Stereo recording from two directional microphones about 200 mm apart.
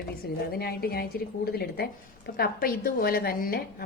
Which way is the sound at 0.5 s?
50° left (ahead or behind).